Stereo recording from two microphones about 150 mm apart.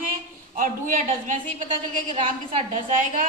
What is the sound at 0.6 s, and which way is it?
Speech, 65° right (ahead or behind).